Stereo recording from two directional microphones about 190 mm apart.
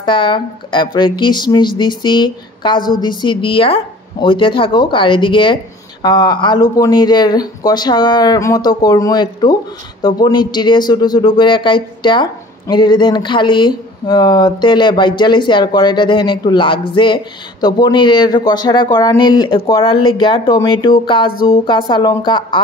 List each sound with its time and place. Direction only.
0.0 s speech: 25° left (ahead or behind)
21.3 s speech: 50° left (ahead or behind)
21.5 s speech: 25° left (ahead or behind)